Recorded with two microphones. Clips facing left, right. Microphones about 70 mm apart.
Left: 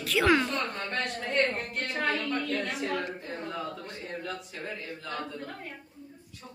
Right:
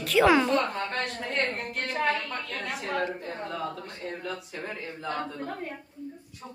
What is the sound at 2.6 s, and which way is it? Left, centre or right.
Speech, centre.